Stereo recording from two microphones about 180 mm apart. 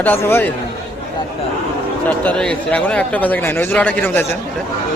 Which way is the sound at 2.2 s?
5° left (ahead or behind).